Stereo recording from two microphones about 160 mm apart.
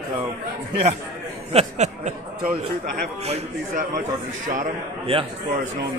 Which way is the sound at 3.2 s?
40° right (ahead or behind).